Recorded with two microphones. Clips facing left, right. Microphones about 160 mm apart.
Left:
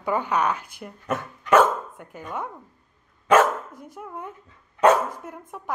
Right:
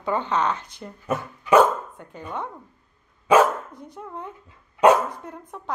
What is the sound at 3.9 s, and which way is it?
A woman's voice, 10° left (ahead or behind).